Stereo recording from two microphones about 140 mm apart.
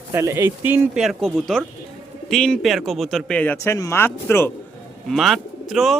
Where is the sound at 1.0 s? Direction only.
Centre (ahead or behind).